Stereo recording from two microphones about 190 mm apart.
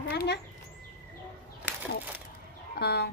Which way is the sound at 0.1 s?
55° left (ahead or behind).